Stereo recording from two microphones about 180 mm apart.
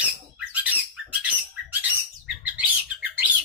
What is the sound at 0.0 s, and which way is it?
Squawk, 10° right (ahead or behind).